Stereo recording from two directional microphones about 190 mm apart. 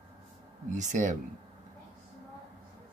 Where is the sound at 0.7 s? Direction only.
40° right (ahead or behind).